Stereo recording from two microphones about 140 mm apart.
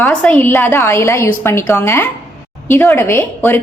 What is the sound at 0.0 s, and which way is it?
A woman's voice, 10° left (ahead or behind).